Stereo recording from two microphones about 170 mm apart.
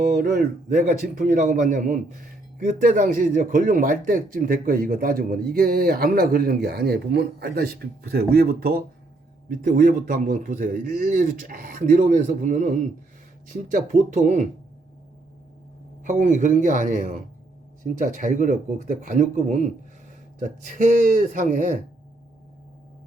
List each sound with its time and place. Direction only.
1.1 s a man's voice: 45° right (ahead or behind); by 8.8 s 65° right (ahead or behind)
9.5 s a man's voice: 50° right (ahead or behind)
16.0 s a man's voice: 45° right (ahead or behind)